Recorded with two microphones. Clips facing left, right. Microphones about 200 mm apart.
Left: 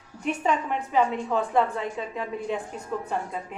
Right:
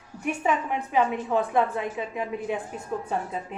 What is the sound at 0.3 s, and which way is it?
A woman's voice, 10° right (ahead or behind).